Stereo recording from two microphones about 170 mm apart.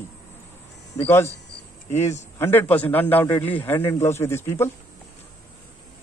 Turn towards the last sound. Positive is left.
turn(degrees=15)  # may be behind; listen again after turning